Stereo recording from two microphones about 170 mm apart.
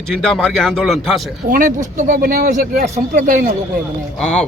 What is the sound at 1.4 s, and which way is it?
Speech, 50° right (ahead or behind).